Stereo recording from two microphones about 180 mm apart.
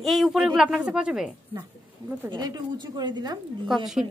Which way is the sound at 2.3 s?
25° right (ahead or behind).